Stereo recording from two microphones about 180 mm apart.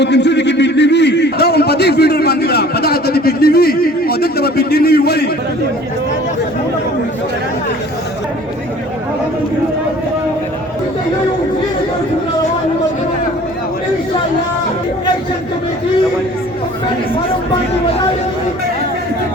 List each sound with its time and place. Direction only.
0.0 s a man's voice: 75° left (ahead or behind)